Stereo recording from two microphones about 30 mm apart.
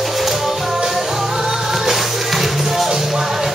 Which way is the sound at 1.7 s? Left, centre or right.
Centre.